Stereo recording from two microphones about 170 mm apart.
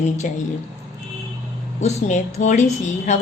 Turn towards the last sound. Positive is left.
turn(degrees=45)  # may be behind; listen again after turning